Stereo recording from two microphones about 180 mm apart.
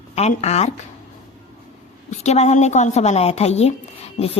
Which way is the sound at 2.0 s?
40° left (ahead or behind).